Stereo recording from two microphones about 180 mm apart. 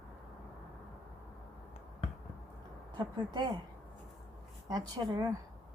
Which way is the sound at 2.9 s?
25° right (ahead or behind).